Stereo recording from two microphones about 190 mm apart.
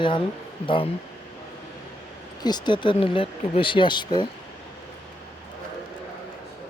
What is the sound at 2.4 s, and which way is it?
Speech, 20° left (ahead or behind).